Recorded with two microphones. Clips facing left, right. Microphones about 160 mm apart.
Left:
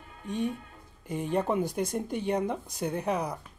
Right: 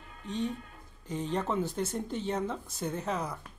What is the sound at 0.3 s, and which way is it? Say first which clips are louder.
Speech: left 2 dB; 10° left (ahead or behind).